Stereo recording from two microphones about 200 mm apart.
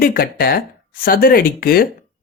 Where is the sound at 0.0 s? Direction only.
50° left (ahead or behind).